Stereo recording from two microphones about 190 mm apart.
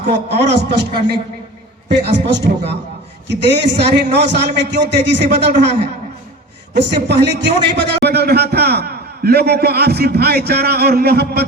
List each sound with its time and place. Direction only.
0.1 s a man's voice: 65° right (ahead or behind)
1.9 s a man's voice: 65° right (ahead or behind)
6.7 s a man's voice: 65° right (ahead or behind)